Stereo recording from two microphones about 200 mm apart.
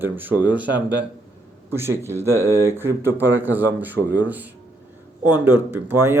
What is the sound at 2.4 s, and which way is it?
Speech, 15° left (ahead or behind).